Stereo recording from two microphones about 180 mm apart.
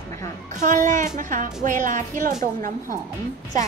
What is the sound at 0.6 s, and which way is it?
Speech, 45° right (ahead or behind).